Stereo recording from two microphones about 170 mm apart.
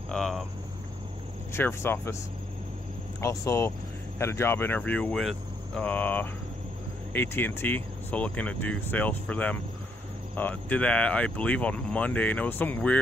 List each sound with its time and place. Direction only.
0.1 s cricket: centre (ahead or behind)
1.5 s speech: 15° left (ahead or behind)
3.2 s speech: 15° left (ahead or behind)